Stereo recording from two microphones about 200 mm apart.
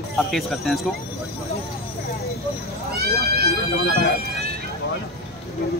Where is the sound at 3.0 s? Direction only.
50° right (ahead or behind).